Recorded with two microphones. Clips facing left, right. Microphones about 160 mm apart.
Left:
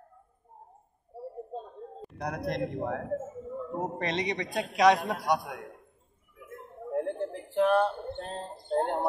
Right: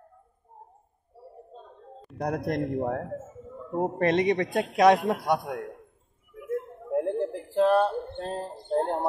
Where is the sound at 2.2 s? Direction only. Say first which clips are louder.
Right 4 dB; 50° right (ahead or behind).